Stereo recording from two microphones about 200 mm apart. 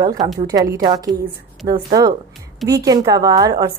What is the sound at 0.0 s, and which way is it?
A woman's voice, 20° right (ahead or behind).